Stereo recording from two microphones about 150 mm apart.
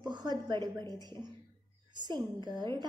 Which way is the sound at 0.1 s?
30° right (ahead or behind).